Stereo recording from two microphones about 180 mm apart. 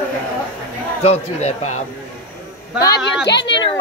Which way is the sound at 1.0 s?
35° left (ahead or behind).